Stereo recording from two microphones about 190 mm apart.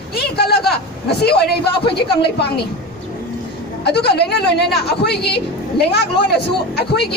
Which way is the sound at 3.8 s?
60° left (ahead or behind).